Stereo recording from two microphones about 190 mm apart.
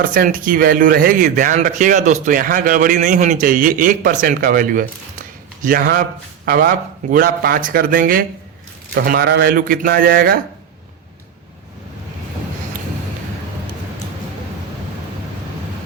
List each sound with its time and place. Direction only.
0.0 s speech: 50° right (ahead or behind)